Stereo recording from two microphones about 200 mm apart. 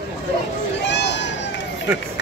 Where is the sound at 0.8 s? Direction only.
60° left (ahead or behind).